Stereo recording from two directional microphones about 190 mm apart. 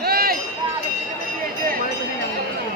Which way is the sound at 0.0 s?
55° right (ahead or behind).